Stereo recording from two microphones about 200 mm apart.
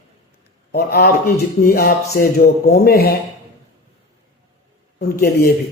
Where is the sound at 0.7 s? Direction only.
55° left (ahead or behind).